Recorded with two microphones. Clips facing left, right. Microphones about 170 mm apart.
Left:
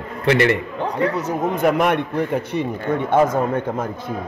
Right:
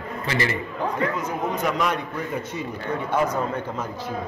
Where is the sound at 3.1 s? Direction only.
50° left (ahead or behind).